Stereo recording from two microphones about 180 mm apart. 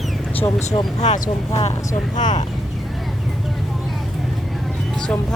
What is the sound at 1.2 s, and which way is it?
Speech, 35° left (ahead or behind).